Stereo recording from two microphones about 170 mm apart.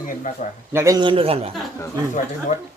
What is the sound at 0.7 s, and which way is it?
Speech, 15° right (ahead or behind).